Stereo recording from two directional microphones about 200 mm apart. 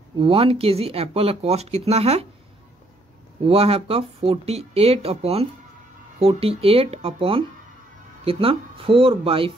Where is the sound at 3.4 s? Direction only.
30° right (ahead or behind).